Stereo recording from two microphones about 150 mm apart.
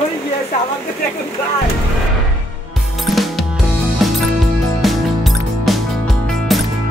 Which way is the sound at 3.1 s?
Centre (ahead or behind).